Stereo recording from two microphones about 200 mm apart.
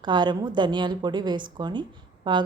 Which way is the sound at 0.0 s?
20° right (ahead or behind).